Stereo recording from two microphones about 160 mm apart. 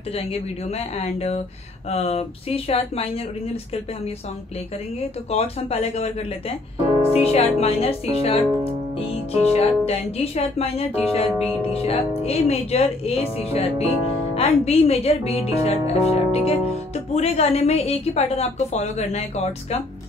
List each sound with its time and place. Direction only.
0.1 s speech: 40° left (ahead or behind)
5.3 s speech: 40° left (ahead or behind)